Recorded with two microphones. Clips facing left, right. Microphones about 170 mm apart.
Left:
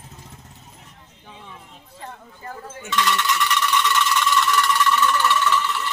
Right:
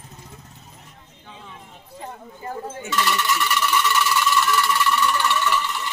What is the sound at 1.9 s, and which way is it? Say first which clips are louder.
Clip-clop: right 3 dB; 15° right (ahead or behind).